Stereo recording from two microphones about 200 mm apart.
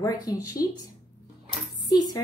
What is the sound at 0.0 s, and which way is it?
Speech, 20° left (ahead or behind).